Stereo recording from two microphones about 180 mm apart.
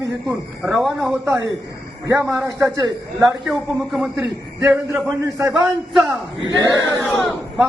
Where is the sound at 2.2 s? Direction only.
5° right (ahead or behind).